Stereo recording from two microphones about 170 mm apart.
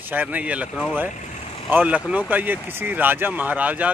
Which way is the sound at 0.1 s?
10° right (ahead or behind).